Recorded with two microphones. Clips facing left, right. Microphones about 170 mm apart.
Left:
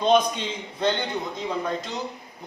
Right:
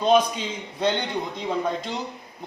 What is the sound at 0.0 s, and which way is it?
Speech, 5° right (ahead or behind).